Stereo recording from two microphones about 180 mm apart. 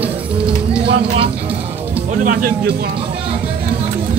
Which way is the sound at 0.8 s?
30° right (ahead or behind).